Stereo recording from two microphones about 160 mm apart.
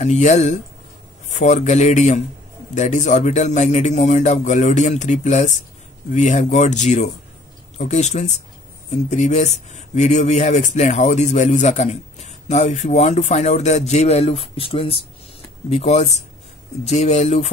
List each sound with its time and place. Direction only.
0.0 s speech: 45° left (ahead or behind)